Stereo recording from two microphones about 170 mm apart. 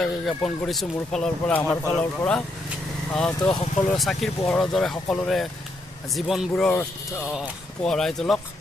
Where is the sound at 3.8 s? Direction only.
Centre (ahead or behind).